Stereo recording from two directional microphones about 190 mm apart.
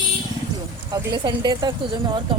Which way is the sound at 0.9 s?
20° right (ahead or behind).